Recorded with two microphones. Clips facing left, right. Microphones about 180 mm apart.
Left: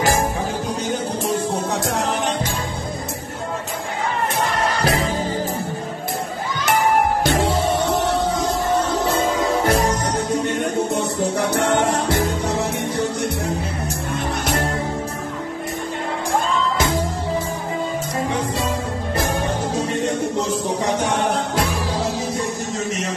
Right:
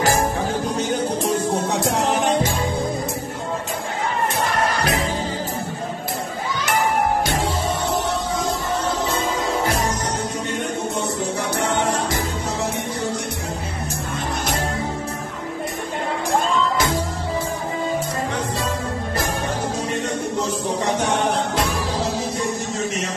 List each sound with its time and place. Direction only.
1.2 s music: centre (ahead or behind)
4.8 s music: 35° left (ahead or behind)
11.5 s music: 65° left (ahead or behind)